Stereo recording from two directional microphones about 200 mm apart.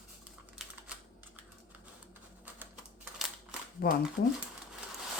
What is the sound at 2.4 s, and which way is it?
Typing, 10° right (ahead or behind).